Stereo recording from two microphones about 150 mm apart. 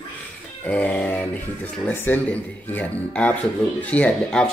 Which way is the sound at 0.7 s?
10° left (ahead or behind).